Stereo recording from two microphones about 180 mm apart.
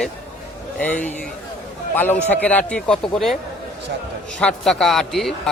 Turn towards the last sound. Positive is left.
turn(degrees=0)  # may be behind; listen again after turning